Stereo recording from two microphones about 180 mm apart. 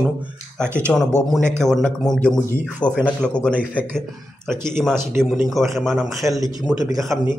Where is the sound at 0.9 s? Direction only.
10° left (ahead or behind).